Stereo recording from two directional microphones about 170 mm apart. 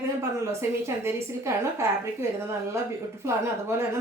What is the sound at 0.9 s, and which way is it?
Speech, 15° right (ahead or behind).